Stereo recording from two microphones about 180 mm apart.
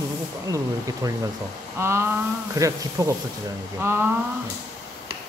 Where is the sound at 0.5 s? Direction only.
20° right (ahead or behind).